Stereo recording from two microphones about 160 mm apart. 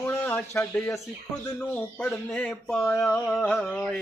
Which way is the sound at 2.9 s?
5° left (ahead or behind).